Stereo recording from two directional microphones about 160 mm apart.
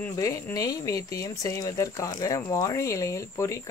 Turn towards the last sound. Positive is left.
turn(degrees=20)  # may be behind; listen again after turning